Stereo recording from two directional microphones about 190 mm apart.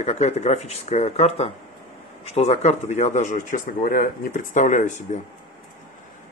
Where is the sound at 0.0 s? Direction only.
35° left (ahead or behind).